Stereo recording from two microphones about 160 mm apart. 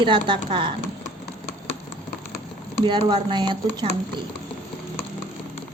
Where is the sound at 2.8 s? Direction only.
25° right (ahead or behind).